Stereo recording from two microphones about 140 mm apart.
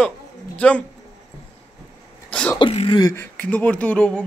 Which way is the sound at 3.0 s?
15° left (ahead or behind).